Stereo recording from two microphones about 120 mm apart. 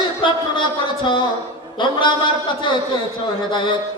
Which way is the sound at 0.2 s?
40° left (ahead or behind).